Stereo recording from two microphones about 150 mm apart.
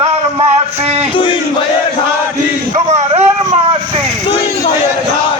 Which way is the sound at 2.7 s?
50° right (ahead or behind).